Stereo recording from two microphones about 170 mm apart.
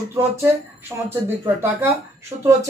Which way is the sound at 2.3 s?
20° right (ahead or behind).